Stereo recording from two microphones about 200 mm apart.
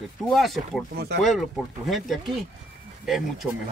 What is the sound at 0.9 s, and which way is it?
Speech, 55° right (ahead or behind).